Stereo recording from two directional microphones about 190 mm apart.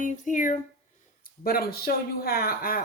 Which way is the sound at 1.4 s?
55° left (ahead or behind).